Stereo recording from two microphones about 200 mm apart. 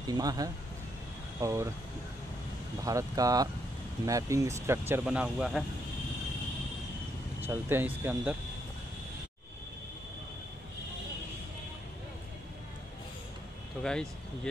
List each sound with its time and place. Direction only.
0.0 s speech: 20° right (ahead or behind)
2.8 s speech: 15° right (ahead or behind)
7.4 s speech: 10° right (ahead or behind)
13.8 s speech: 5° left (ahead or behind)